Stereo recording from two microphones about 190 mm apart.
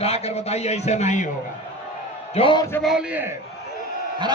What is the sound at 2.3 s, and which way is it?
Speech, 25° left (ahead or behind).